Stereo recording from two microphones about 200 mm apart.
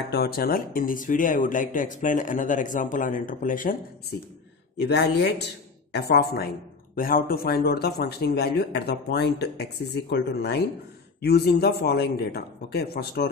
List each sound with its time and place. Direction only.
0.1 s speech: 50° left (ahead or behind)
4.8 s speech: 60° left (ahead or behind)